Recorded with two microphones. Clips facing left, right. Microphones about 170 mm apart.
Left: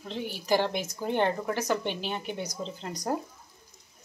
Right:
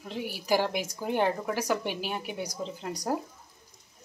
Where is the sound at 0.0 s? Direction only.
10° right (ahead or behind).